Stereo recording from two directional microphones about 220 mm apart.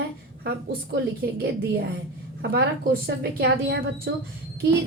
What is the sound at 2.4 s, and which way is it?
A woman's voice, 45° right (ahead or behind).